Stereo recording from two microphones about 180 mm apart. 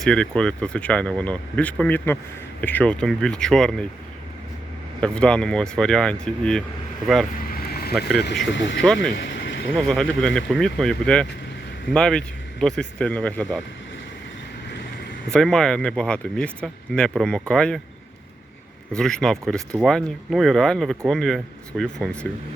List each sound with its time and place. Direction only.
0.0 s speech: 5° left (ahead or behind)
4.9 s speech: 5° left (ahead or behind)
7.4 s vehicle: 55° left (ahead or behind)
7.9 s speech: centre (ahead or behind)
8.5 s speech: 90° left
8.8 s speech: 5° left (ahead or behind)
9.1 s a sound: 85° left
9.7 s speech: 5° left (ahead or behind)
15.3 s speech: 5° left (ahead or behind)
18.9 s speech: 5° left (ahead or behind)